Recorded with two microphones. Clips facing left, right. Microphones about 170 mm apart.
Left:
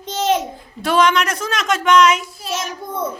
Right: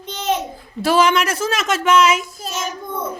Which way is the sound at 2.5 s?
45° right (ahead or behind).